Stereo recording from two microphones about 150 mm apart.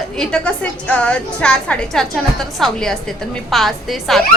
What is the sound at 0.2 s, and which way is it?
A woman's voice, 5° left (ahead or behind).